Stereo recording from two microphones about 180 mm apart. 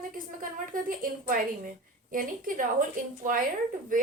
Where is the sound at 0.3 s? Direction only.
50° right (ahead or behind).